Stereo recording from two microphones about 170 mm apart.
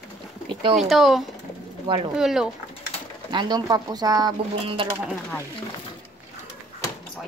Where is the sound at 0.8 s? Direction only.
Centre (ahead or behind).